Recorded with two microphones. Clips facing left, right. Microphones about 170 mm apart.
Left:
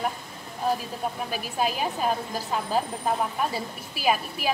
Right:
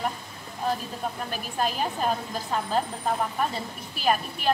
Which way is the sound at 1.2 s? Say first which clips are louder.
Left 1 dB; 5° left (ahead or behind).